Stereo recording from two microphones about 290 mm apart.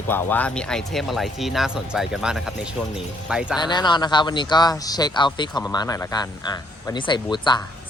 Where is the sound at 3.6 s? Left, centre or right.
Centre.